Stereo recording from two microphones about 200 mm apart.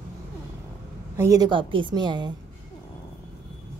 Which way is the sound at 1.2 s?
15° right (ahead or behind).